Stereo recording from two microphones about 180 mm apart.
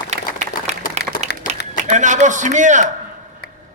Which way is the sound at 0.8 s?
50° left (ahead or behind).